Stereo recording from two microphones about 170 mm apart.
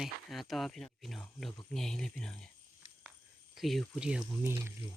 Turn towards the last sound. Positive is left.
turn(degrees=-15)  # may be behind; listen again after turning